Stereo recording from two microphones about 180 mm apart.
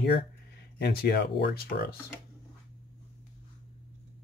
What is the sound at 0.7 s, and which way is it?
Speech, 65° left (ahead or behind).